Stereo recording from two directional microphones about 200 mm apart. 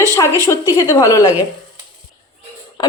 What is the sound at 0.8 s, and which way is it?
Speech, 15° left (ahead or behind).